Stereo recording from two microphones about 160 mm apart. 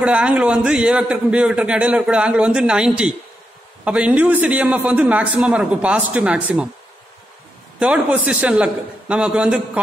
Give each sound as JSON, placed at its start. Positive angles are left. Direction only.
{"t": 0.0, "sound": "a man's voice", "side_deg": -5}
{"t": 7.8, "sound": "a man's voice", "side_deg": -5}